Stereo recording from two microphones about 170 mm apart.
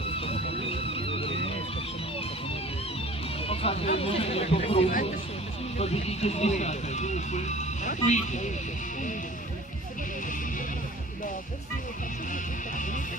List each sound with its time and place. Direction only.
0.9 s music: 35° left (ahead or behind)
3.4 s speech: 35° left (ahead or behind)
12.3 s speech: 50° left (ahead or behind)